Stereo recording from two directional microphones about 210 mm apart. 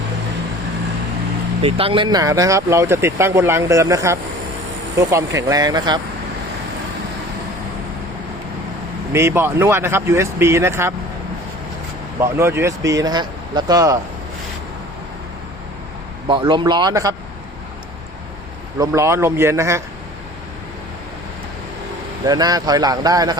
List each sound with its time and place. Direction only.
1.6 s speech: 25° right (ahead or behind)
9.1 s speech: 10° right (ahead or behind)
12.2 s speech: 10° right (ahead or behind)
16.2 s speech: 25° right (ahead or behind)
18.8 s speech: 15° right (ahead or behind)
22.3 s speech: 20° right (ahead or behind)